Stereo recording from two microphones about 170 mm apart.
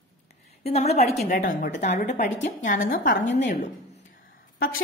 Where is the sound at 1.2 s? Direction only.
50° left (ahead or behind).